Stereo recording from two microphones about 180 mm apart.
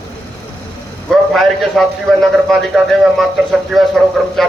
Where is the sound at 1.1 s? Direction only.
Centre (ahead or behind).